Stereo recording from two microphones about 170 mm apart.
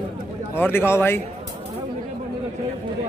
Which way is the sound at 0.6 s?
15° left (ahead or behind).